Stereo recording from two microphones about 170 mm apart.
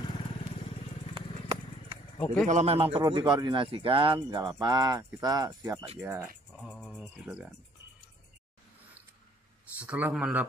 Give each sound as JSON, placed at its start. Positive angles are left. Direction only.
{"t": 0.1, "sound": "vehicle", "side_deg": 30}
{"t": 2.1, "sound": "speech", "side_deg": 10}
{"t": 2.4, "sound": "a man's voice", "side_deg": -40}
{"t": 6.5, "sound": "a sound", "side_deg": 5}
{"t": 7.2, "sound": "speech", "side_deg": -5}
{"t": 9.8, "sound": "a man's voice", "side_deg": -10}